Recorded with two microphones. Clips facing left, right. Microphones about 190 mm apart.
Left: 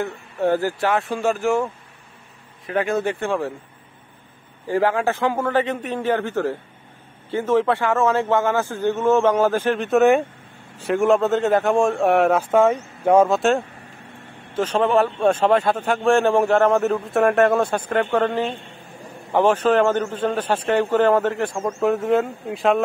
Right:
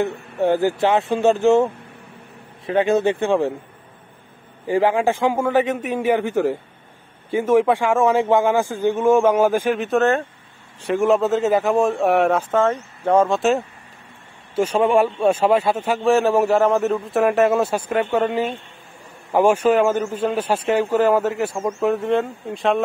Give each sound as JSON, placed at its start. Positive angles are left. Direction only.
{"t": 0.0, "sound": "speech", "side_deg": -20}
{"t": 4.6, "sound": "speech", "side_deg": -15}
{"t": 9.8, "sound": "speech", "side_deg": 0}
{"t": 13.4, "sound": "speech", "side_deg": 0}